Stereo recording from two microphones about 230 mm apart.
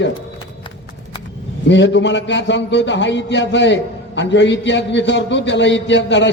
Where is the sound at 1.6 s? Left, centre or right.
Left.